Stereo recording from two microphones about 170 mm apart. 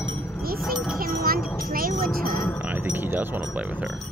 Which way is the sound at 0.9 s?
60° right (ahead or behind).